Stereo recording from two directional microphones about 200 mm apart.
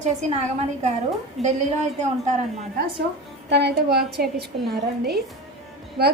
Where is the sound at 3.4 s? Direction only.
60° right (ahead or behind).